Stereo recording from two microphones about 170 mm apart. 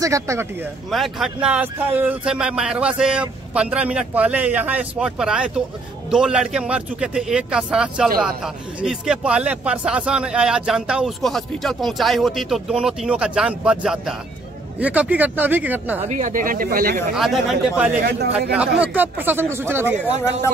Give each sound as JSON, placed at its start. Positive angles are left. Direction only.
{"t": 0.0, "sound": "speech", "side_deg": -20}
{"t": 0.9, "sound": "speech", "side_deg": 0}
{"t": 16.0, "sound": "speech", "side_deg": -45}
{"t": 17.1, "sound": "speech", "side_deg": 0}